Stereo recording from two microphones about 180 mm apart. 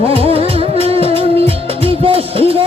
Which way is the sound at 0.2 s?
30° right (ahead or behind).